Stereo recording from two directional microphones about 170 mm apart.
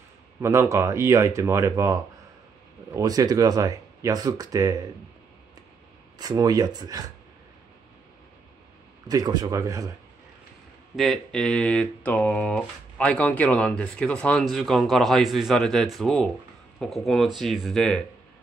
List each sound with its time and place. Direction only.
0.4 s speech: 15° right (ahead or behind)
6.1 s speech: 20° right (ahead or behind)
9.0 s speech: 20° right (ahead or behind)
11.0 s speech: centre (ahead or behind)